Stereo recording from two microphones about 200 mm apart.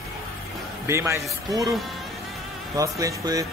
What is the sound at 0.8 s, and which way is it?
Speech, 15° right (ahead or behind).